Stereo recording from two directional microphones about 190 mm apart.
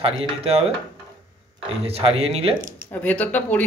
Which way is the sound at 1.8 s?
30° right (ahead or behind).